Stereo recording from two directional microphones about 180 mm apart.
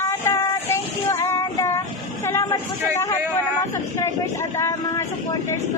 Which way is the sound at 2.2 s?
15° left (ahead or behind).